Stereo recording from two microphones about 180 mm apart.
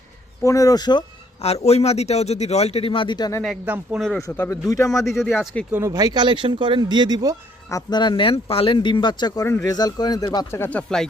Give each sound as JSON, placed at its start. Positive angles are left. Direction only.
{"t": 0.4, "sound": "speech", "side_deg": 20}
{"t": 1.6, "sound": "a man's voice", "side_deg": 35}
{"t": 3.7, "sound": "speech", "side_deg": -5}
{"t": 4.2, "sound": "speech", "side_deg": 15}
{"t": 5.0, "sound": "speech", "side_deg": 0}
{"t": 5.8, "sound": "speech", "side_deg": -20}
{"t": 7.7, "sound": "speech", "side_deg": 20}